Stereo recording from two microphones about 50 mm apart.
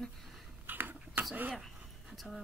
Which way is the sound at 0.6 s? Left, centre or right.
Right.